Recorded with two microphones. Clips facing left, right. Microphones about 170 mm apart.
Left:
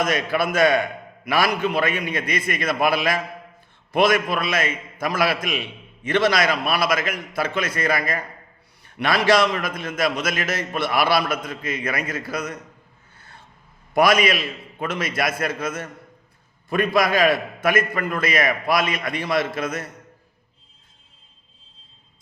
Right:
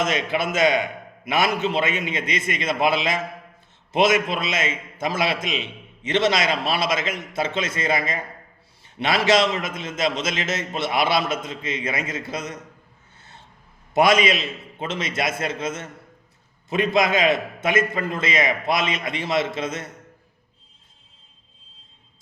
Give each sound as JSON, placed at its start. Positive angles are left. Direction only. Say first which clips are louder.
{"t": 0.0, "sound": "a man's voice", "louder": "left 1 dB", "side_deg": -25}
{"t": 13.1, "sound": "a sound", "louder": "even", "side_deg": -25}
{"t": 13.9, "sound": "a man's voice", "louder": "even", "side_deg": -25}